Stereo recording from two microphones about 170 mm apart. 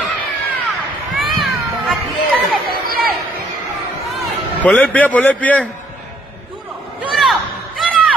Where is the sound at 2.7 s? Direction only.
65° right (ahead or behind).